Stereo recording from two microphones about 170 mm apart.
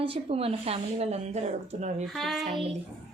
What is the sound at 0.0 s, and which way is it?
A woman's voice, 35° right (ahead or behind).